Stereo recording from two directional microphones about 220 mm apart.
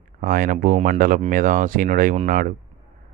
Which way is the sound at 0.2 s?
40° right (ahead or behind).